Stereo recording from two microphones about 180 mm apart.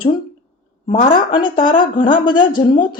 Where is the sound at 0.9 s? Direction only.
30° left (ahead or behind).